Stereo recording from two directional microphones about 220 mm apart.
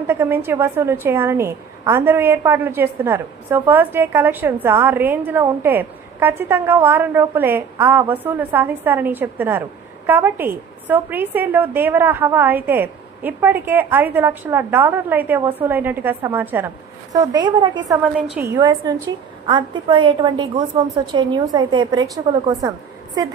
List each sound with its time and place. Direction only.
0.0 s a woman's voice: 10° right (ahead or behind)